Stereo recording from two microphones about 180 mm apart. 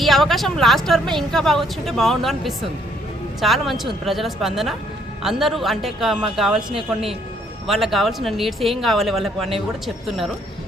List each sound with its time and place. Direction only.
0.0 s a woman's voice: centre (ahead or behind)
6.7 s speech: 30° right (ahead or behind)
7.7 s a woman's voice: centre (ahead or behind)